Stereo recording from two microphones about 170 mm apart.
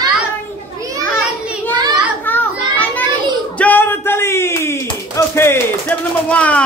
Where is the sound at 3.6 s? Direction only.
10° left (ahead or behind).